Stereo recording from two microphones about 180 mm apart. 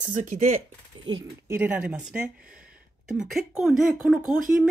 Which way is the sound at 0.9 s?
30° right (ahead or behind).